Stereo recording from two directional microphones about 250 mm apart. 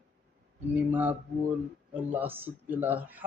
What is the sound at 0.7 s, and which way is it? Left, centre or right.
Speech, centre.